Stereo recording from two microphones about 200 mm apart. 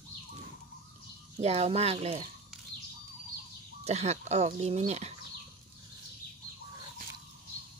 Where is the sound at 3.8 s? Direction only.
35° right (ahead or behind).